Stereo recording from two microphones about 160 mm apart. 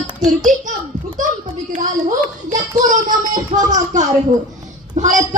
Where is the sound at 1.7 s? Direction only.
50° right (ahead or behind).